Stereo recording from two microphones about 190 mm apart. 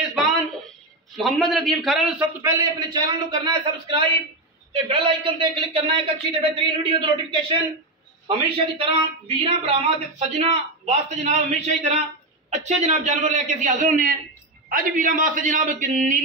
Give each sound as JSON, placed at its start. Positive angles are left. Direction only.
{"t": 0.1, "sound": "a sound", "side_deg": 0}
{"t": 1.1, "sound": "a man's voice", "side_deg": 0}
{"t": 2.4, "sound": "a man's voice", "side_deg": -20}